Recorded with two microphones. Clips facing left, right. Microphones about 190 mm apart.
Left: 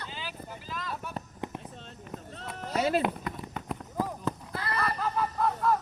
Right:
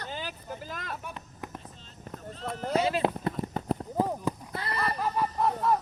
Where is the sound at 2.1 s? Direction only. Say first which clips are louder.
Left 1 dB; 40° right (ahead or behind).